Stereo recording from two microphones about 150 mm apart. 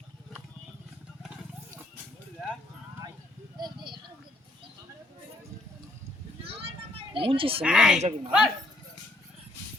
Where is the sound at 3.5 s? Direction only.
30° right (ahead or behind).